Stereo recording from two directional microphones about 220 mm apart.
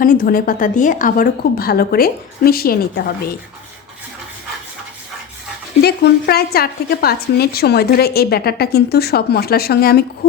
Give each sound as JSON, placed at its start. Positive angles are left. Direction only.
{"t": 0.0, "sound": "a woman's voice", "side_deg": 40}
{"t": 5.8, "sound": "a woman's voice", "side_deg": 45}